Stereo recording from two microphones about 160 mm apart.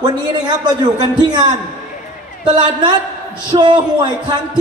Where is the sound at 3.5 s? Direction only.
30° right (ahead or behind).